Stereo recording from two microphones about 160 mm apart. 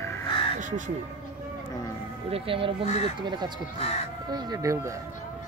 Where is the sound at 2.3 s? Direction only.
35° right (ahead or behind); by 5.0 s 20° right (ahead or behind).